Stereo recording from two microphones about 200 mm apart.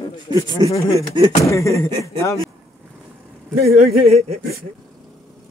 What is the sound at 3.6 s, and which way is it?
Speech, 50° right (ahead or behind).